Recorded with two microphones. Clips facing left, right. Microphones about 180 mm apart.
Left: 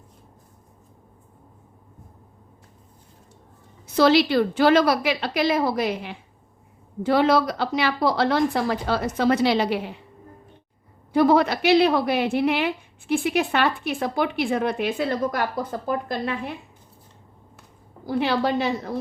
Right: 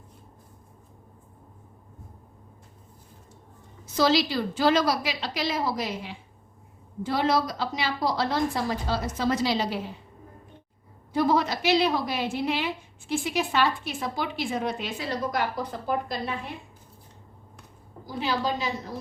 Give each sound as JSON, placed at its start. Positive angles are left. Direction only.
{"t": 3.8, "sound": "a woman's voice", "side_deg": 60}
{"t": 11.1, "sound": "a woman's voice", "side_deg": 60}
{"t": 18.0, "sound": "a woman's voice", "side_deg": 65}